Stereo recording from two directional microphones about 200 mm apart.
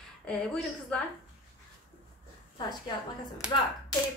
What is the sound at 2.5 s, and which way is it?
Speech, 20° left (ahead or behind).